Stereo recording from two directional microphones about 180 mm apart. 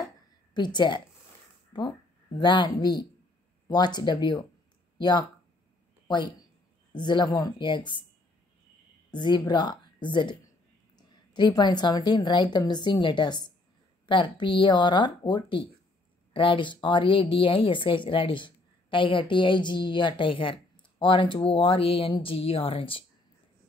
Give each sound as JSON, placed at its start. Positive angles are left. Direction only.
{"t": 0.6, "sound": "a woman's voice", "side_deg": 25}
{"t": 9.1, "sound": "a woman's voice", "side_deg": 25}
{"t": 11.3, "sound": "a woman's voice", "side_deg": 25}